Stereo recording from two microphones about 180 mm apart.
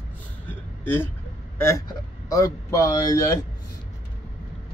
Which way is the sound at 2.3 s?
15° left (ahead or behind).